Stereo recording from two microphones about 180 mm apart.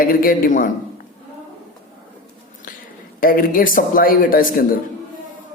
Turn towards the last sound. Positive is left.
turn(degrees=55)  # may be behind; listen again after turning